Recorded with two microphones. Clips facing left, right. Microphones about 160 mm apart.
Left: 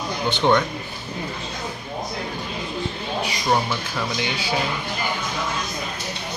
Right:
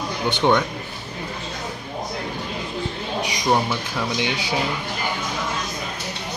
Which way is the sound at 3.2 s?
15° right (ahead or behind).